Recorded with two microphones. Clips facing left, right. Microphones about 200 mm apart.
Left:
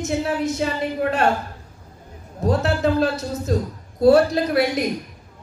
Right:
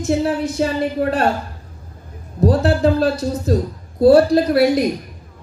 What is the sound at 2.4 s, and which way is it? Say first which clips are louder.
A woman's voice: right 4 dB; 35° right (ahead or behind).